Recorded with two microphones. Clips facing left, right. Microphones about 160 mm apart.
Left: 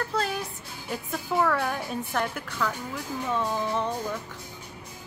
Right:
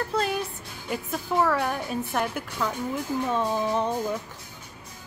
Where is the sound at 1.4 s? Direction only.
5° right (ahead or behind).